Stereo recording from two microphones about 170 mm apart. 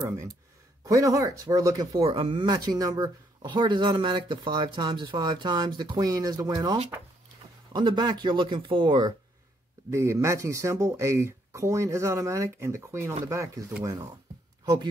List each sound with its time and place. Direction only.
0.0 s speech: 20° right (ahead or behind)
9.8 s speech: 15° right (ahead or behind)